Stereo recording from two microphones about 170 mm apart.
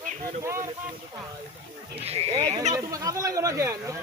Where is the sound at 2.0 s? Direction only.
35° right (ahead or behind).